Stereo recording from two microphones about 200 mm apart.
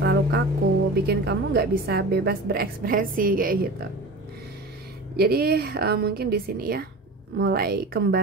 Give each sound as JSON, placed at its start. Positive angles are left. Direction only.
{"t": 0.0, "sound": "music", "side_deg": -55}
{"t": 1.0, "sound": "a woman's voice", "side_deg": -55}
{"t": 5.1, "sound": "a woman's voice", "side_deg": -50}